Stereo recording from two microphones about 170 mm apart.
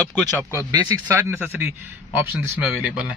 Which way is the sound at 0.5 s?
20° right (ahead or behind).